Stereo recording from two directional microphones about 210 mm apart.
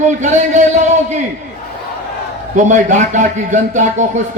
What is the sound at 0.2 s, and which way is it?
Speech, 35° right (ahead or behind).